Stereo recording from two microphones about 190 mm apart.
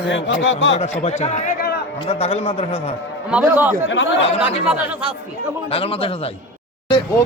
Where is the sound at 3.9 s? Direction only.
80° left.